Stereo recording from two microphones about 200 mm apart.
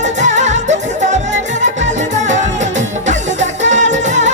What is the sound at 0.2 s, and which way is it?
Music, 35° right (ahead or behind).